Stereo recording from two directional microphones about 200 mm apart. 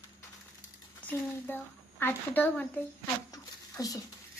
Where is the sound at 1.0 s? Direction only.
10° left (ahead or behind).